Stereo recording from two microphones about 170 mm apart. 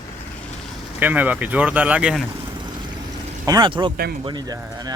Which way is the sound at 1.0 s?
10° right (ahead or behind).